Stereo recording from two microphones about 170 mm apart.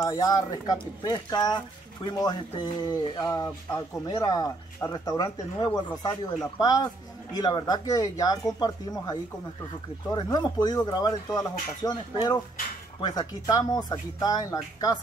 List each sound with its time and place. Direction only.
0.0 s speech: 20° left (ahead or behind)